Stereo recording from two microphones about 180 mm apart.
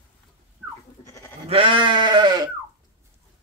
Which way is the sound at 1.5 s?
30° right (ahead or behind).